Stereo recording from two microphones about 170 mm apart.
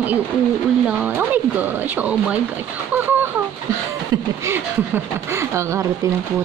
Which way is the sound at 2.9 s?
10° right (ahead or behind).